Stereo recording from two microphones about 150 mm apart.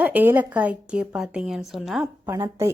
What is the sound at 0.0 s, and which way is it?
A woman's voice, 10° right (ahead or behind).